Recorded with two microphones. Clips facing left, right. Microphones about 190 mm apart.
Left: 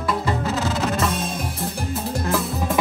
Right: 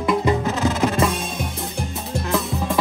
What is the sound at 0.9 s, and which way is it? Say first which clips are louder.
Drum: right 2 dB; centre (ahead or behind).